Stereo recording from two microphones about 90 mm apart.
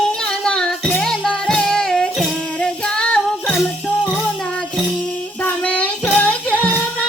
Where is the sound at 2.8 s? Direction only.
10° left (ahead or behind).